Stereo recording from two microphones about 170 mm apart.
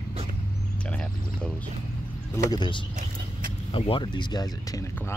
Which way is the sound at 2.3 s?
25° left (ahead or behind).